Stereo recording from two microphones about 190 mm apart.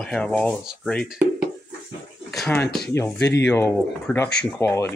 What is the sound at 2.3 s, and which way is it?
Speech, 5° left (ahead or behind).